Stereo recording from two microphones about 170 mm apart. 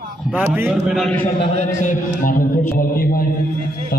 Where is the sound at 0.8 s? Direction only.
Centre (ahead or behind).